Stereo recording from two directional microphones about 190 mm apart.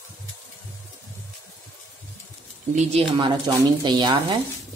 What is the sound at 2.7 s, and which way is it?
Speech, 30° right (ahead or behind).